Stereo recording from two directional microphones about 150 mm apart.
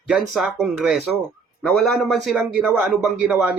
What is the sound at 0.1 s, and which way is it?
A man's voice, centre (ahead or behind).